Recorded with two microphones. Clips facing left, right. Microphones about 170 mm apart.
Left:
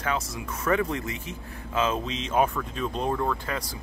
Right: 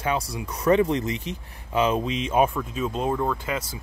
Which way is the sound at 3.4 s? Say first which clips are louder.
Right 3 dB; 20° right (ahead or behind).